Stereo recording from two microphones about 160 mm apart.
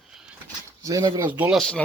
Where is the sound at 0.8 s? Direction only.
20° right (ahead or behind).